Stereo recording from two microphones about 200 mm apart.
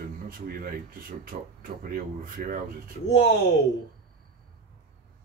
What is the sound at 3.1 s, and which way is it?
Speech, 60° left (ahead or behind).